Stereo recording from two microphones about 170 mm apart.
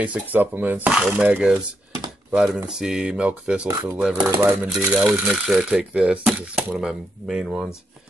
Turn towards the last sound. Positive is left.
turn(degrees=0)  # may be behind; listen again after turning